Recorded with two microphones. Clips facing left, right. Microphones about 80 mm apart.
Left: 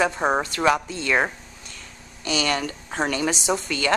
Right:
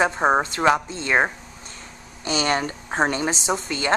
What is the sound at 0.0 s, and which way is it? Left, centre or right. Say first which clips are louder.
A woman's voice: right 2 dB; right.